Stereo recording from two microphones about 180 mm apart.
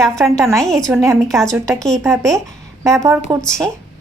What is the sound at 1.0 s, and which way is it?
Speech, 15° right (ahead or behind).